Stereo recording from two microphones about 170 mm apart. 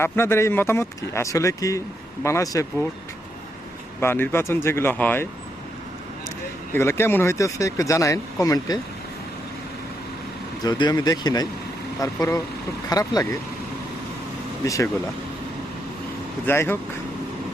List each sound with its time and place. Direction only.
0.0 s speech: 15° left (ahead or behind)
4.0 s speech: 15° left (ahead or behind)
6.7 s speech: 15° left (ahead or behind)
10.6 s speech: 25° left (ahead or behind)
14.6 s speech: 15° left (ahead or behind)
16.5 s speech: 15° left (ahead or behind)